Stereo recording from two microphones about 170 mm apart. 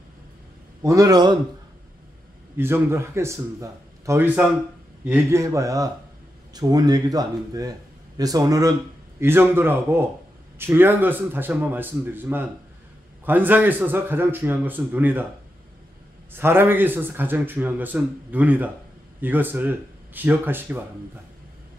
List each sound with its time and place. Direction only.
0.8 s speech: 20° right (ahead or behind)
2.5 s a man's voice: 15° right (ahead or behind)
16.3 s a man's voice: 15° right (ahead or behind)